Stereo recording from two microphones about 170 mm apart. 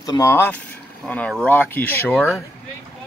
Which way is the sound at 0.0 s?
20° left (ahead or behind).